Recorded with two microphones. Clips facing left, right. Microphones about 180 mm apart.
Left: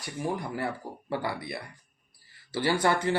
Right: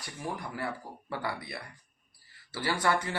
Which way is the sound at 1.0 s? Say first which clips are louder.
Left 4 dB; 25° left (ahead or behind).